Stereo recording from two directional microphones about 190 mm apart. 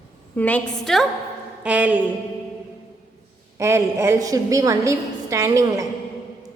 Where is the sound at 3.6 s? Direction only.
15° right (ahead or behind).